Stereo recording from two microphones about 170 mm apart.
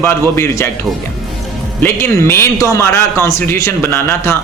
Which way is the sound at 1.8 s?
15° left (ahead or behind).